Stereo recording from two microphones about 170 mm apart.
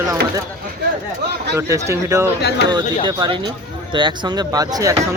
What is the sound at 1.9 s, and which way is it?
Speech, 15° right (ahead or behind).